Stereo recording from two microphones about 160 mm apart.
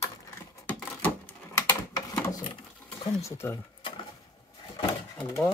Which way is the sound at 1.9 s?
25° left (ahead or behind).